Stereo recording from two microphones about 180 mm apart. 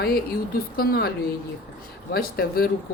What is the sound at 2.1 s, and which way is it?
Speech, 55° left (ahead or behind).